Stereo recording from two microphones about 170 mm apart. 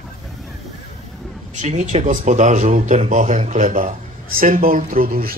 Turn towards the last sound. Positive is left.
turn(degrees=-55)  # may be behind; listen again after turning